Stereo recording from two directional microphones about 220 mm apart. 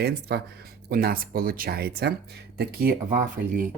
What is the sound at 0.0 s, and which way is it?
Speech, 45° right (ahead or behind).